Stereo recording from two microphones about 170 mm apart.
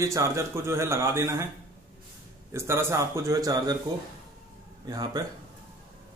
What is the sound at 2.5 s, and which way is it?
Speech, 15° right (ahead or behind).